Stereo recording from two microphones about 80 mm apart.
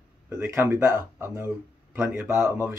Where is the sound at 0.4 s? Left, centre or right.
Right.